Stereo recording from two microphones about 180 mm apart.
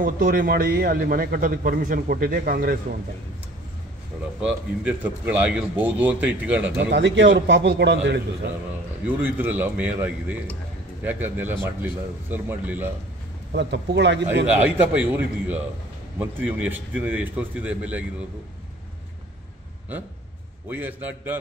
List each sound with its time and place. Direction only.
0.0 s a man's voice: 50° right (ahead or behind)
4.4 s a man's voice: 5° right (ahead or behind)
6.8 s a man's voice: 75° right (ahead or behind)
9.0 s a man's voice: 10° right (ahead or behind)
13.5 s a man's voice: 70° right (ahead or behind)
14.5 s a man's voice: 10° right (ahead or behind)
20.6 s a man's voice: 10° right (ahead or behind)